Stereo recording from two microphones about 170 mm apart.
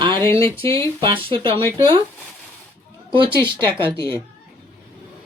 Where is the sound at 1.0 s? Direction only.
30° right (ahead or behind).